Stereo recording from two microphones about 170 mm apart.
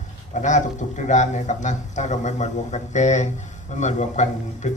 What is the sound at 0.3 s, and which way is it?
A man's voice, 45° left (ahead or behind).